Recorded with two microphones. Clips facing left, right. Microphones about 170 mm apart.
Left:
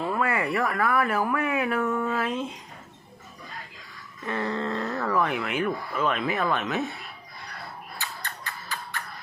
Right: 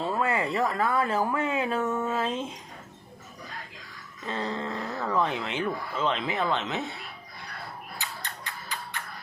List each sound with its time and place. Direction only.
0.0 s speech: 20° right (ahead or behind)
4.3 s speech: 20° right (ahead or behind)
7.9 s a sound: 15° right (ahead or behind)